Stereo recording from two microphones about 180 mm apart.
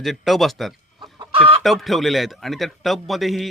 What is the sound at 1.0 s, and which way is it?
Chicken, 30° right (ahead or behind).